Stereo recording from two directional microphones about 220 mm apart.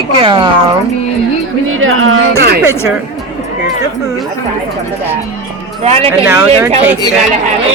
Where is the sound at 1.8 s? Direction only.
70° right (ahead or behind).